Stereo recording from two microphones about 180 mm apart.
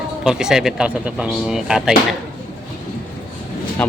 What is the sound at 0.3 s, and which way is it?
Speech, 5° right (ahead or behind).